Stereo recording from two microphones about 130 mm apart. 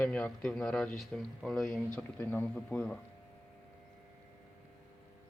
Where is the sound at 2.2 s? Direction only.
15° left (ahead or behind).